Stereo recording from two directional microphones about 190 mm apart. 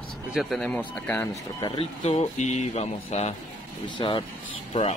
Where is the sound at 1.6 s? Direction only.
25° left (ahead or behind).